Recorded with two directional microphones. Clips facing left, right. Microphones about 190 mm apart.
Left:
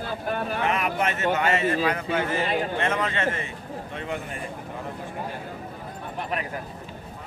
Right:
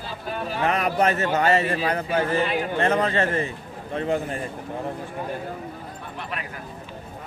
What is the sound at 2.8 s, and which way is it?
A man's voice, 35° right (ahead or behind).